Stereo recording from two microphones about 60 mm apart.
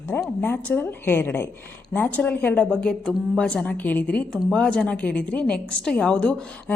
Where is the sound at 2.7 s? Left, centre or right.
Centre.